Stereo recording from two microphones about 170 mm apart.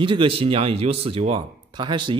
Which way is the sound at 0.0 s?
30° right (ahead or behind).